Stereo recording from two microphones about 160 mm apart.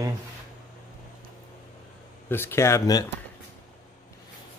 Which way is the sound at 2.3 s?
15° left (ahead or behind).